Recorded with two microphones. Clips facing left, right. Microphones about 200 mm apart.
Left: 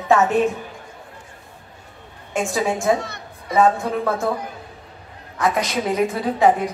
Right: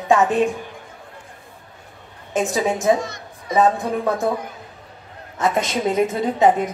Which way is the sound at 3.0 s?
60° left (ahead or behind).